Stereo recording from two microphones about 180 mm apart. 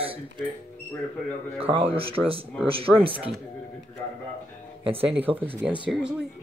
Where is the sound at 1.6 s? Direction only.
30° right (ahead or behind).